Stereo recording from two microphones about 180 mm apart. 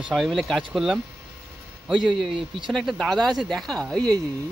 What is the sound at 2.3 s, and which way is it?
Speech, 30° right (ahead or behind).